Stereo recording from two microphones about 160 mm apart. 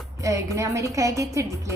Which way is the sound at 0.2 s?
20° right (ahead or behind).